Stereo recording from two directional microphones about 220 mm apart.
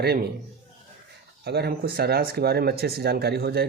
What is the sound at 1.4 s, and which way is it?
Speech, 45° right (ahead or behind).